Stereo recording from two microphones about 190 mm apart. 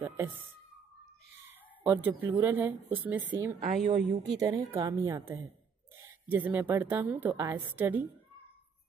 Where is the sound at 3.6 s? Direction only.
40° right (ahead or behind).